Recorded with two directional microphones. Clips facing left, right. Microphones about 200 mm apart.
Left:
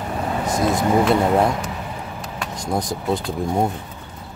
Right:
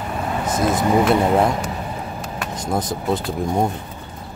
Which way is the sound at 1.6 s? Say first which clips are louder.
Right 2 dB; 35° right (ahead or behind).